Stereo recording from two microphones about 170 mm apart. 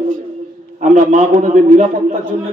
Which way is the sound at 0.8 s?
45° right (ahead or behind).